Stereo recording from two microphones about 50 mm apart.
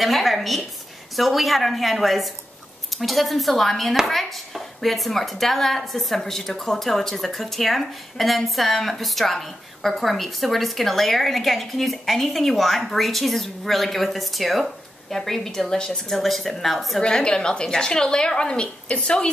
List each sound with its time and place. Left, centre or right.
0.0 s a woman's voice: centre
17.0 s a woman's voice: centre